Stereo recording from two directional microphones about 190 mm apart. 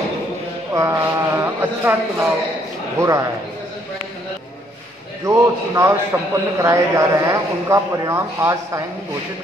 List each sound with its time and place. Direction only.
0.7 s a man's voice: 15° right (ahead or behind)
5.2 s a man's voice: 15° right (ahead or behind)